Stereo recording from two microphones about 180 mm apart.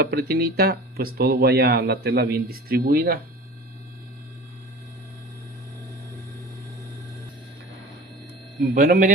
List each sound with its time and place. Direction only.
0.0 s speech: 60° right (ahead or behind)
8.6 s a man's voice: 50° right (ahead or behind)